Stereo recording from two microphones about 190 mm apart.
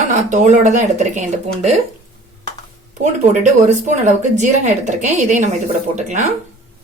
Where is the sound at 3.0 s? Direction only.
35° right (ahead or behind).